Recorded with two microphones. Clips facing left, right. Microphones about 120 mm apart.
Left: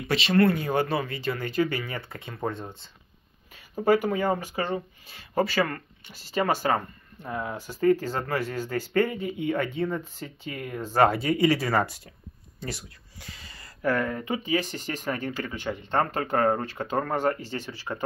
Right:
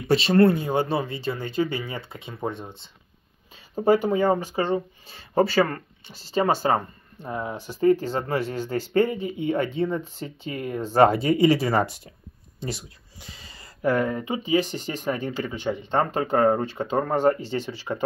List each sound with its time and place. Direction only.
0.1 s speech: 35° right (ahead or behind)
2.3 s speech: 10° right (ahead or behind)
3.7 s speech: 25° right (ahead or behind)